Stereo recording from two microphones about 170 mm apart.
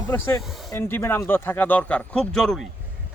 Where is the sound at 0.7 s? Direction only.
15° left (ahead or behind).